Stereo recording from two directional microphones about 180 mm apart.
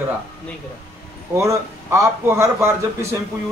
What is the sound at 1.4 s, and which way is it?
A man's voice, 15° right (ahead or behind).